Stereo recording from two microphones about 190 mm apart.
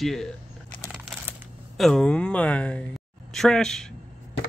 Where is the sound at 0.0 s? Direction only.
Centre (ahead or behind).